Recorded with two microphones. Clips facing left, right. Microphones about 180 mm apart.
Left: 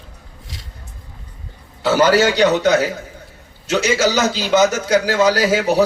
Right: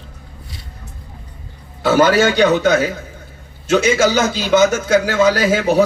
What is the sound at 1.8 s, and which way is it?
Speech, 55° right (ahead or behind).